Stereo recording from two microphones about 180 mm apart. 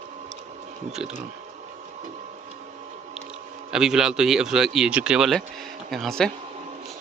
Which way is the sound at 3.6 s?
5° right (ahead or behind).